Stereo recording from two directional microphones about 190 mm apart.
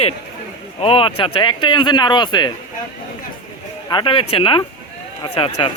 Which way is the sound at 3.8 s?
25° left (ahead or behind).